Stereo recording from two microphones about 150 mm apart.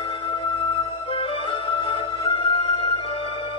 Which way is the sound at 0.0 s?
35° left (ahead or behind).